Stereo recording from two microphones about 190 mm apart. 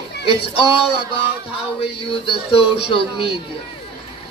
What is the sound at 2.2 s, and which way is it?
Speech, 30° left (ahead or behind).